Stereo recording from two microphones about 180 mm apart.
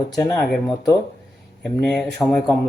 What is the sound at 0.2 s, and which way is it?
Speech, 15° left (ahead or behind).